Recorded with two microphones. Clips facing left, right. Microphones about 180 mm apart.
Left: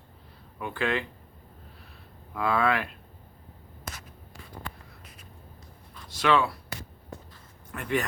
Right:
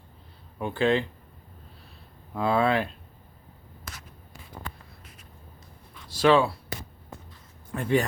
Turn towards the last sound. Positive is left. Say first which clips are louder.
# right 5 dB
turn(degrees=-30)  # may be behind; listen again after turning